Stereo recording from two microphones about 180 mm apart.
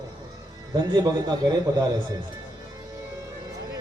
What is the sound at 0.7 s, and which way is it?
A man's voice, 25° right (ahead or behind).